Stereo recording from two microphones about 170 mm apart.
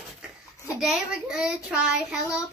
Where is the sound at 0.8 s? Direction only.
5° right (ahead or behind).